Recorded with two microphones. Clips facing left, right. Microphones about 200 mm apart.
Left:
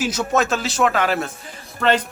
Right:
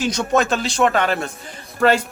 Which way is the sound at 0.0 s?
5° left (ahead or behind).